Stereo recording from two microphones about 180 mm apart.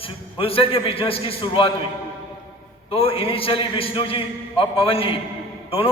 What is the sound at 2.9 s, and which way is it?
A man's voice, 30° left (ahead or behind).